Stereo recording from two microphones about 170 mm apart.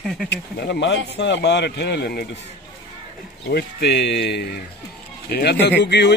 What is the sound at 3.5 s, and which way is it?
Speech, 80° left.